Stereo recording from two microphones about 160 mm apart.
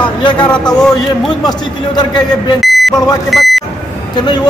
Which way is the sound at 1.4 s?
25° left (ahead or behind).